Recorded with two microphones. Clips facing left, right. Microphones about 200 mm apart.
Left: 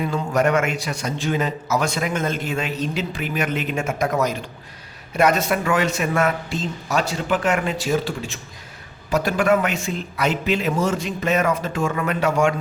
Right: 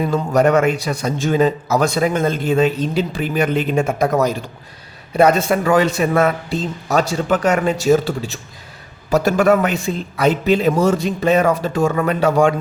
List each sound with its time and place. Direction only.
0.0 s speech: 35° right (ahead or behind)